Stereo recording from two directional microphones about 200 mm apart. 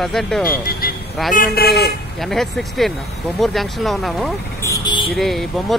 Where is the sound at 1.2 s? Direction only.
Centre (ahead or behind).